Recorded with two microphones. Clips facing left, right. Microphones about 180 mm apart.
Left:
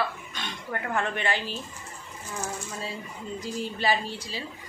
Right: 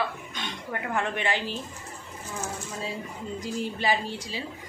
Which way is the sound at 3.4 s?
15° right (ahead or behind).